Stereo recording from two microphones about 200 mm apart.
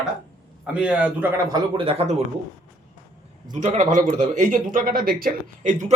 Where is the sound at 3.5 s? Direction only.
35° right (ahead or behind).